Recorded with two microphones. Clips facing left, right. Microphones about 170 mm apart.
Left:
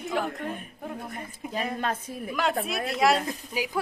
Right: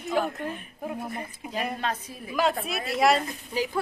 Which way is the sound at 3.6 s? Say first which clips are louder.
Right 3 dB; 10° left (ahead or behind).